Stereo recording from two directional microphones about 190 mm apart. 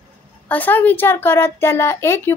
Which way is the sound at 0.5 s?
10° left (ahead or behind).